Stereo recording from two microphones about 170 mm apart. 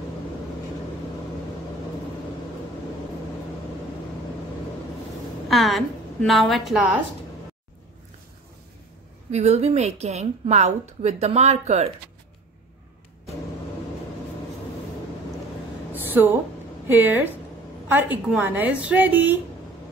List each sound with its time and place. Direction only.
5.5 s a woman's voice: centre (ahead or behind)
9.3 s a woman's voice: 40° right (ahead or behind)
15.9 s a sound: 10° right (ahead or behind)
16.8 s a woman's voice: 10° right (ahead or behind)